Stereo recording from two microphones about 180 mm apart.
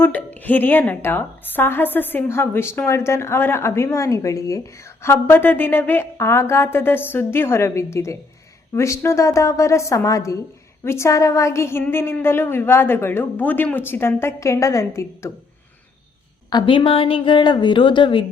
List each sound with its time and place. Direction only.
0.0 s a woman's voice: 10° left (ahead or behind)
16.5 s a woman's voice: 25° left (ahead or behind)